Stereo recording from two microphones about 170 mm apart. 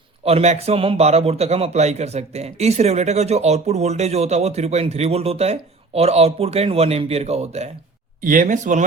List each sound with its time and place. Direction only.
0.3 s a man's voice: 40° right (ahead or behind)
8.2 s speech: 55° right (ahead or behind)